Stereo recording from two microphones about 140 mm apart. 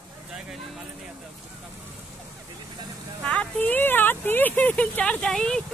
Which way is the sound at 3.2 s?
10° left (ahead or behind).